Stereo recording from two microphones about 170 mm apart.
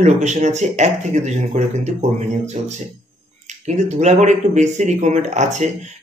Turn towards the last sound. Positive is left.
turn(degrees=-40)  # may be behind; listen again after turning